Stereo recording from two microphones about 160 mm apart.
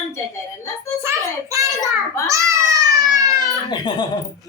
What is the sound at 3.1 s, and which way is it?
Baby cry, 20° right (ahead or behind).